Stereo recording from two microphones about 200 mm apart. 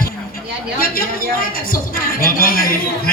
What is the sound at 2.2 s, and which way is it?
Speech, 45° left (ahead or behind).